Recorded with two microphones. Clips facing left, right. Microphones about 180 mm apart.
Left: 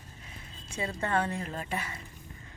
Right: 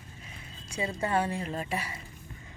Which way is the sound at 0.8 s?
15° right (ahead or behind).